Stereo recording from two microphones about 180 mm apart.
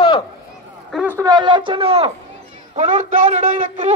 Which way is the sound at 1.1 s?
20° right (ahead or behind).